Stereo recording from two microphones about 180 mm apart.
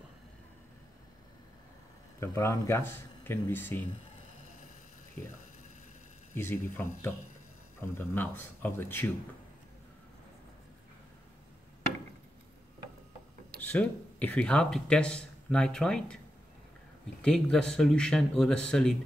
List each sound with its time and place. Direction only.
2.1 s speech: 20° left (ahead or behind)
6.3 s speech: 10° left (ahead or behind)
13.7 s speech: 10° left (ahead or behind)
17.2 s speech: 5° left (ahead or behind)